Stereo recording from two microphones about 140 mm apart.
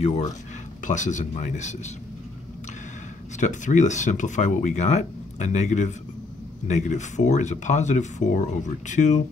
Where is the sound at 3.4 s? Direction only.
60° left (ahead or behind).